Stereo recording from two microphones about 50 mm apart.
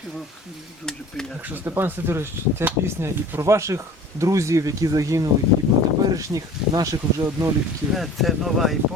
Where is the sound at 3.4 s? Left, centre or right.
Right.